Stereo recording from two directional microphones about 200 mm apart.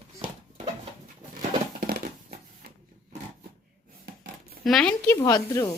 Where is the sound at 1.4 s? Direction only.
50° right (ahead or behind).